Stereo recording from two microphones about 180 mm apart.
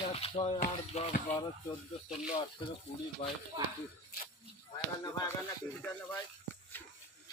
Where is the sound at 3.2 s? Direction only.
45° left (ahead or behind).